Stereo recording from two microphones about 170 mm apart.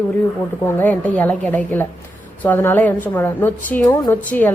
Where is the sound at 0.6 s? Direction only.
10° left (ahead or behind).